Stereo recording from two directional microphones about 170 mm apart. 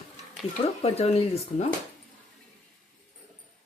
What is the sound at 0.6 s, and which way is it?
Speech, 35° left (ahead or behind).